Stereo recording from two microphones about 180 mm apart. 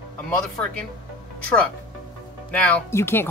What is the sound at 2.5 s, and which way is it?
Speech, 10° left (ahead or behind).